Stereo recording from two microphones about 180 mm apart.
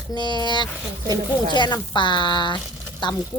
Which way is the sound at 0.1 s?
25° left (ahead or behind).